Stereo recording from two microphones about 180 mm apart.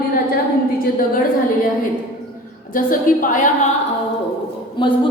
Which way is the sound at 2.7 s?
50° left (ahead or behind).